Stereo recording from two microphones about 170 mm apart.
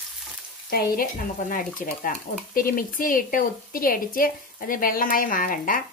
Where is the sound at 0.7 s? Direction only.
60° left (ahead or behind).